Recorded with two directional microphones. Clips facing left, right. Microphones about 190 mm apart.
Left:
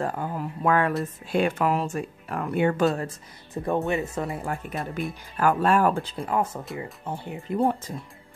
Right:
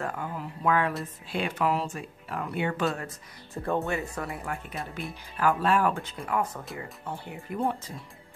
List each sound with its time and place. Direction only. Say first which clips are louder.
0.0 s speech: left 5 dB; 35° left (ahead or behind)
3.5 s speech: left 4 dB; 15° left (ahead or behind)
5.4 s speech: left 3 dB; 45° left (ahead or behind); by 7.5 s 20° left (ahead or behind)
7.5 s speech: left 6 dB; 35° left (ahead or behind)